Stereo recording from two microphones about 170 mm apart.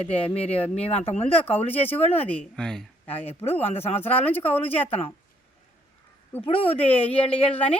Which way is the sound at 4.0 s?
10° left (ahead or behind).